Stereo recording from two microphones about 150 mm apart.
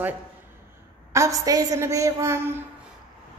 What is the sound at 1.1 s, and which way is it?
A woman's voice, 20° right (ahead or behind).